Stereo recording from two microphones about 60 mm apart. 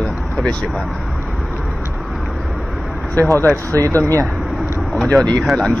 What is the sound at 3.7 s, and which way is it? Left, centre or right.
Speech, right.